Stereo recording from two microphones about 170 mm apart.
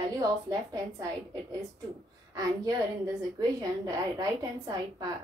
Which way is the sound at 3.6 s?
20° right (ahead or behind).